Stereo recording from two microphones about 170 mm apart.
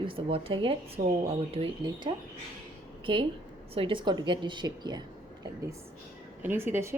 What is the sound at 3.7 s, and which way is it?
Speech, 30° right (ahead or behind).